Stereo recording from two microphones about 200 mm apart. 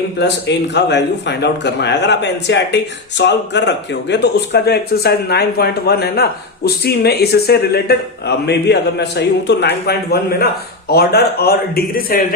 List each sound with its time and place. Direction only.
0.2 s a man's voice: 60° left (ahead or behind)